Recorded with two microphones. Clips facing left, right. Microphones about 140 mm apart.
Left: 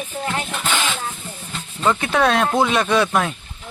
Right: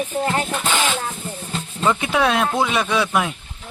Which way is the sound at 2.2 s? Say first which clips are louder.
Left 3 dB; centre (ahead or behind).